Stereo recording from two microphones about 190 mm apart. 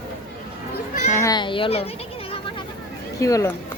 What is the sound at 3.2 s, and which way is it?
Speech, 15° left (ahead or behind).